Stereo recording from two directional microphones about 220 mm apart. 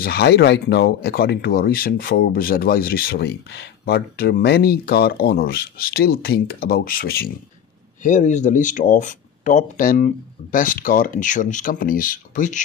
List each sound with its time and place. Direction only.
0.0 s speech: 45° left (ahead or behind)